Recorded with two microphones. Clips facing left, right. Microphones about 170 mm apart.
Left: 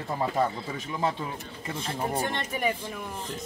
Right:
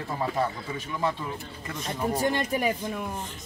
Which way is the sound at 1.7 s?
30° left (ahead or behind).